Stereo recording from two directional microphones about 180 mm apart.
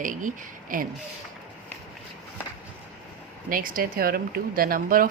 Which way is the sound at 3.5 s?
50° right (ahead or behind).